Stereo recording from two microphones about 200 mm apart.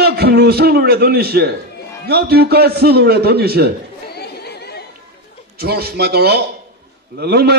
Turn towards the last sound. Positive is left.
turn(degrees=-55)  # may be behind; listen again after turning